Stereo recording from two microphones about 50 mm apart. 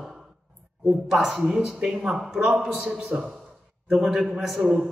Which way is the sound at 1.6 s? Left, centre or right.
Centre.